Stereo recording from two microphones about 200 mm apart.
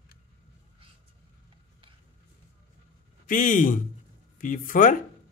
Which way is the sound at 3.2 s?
40° left (ahead or behind).